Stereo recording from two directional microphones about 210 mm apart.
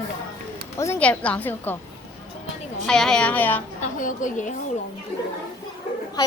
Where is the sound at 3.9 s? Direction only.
40° left (ahead or behind).